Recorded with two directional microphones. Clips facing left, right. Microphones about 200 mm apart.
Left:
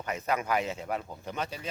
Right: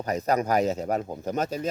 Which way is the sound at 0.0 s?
40° right (ahead or behind).